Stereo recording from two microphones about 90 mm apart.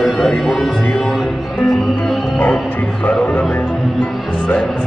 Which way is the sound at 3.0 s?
15° left (ahead or behind).